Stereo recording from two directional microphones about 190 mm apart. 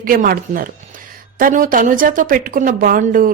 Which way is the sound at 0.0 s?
50° right (ahead or behind).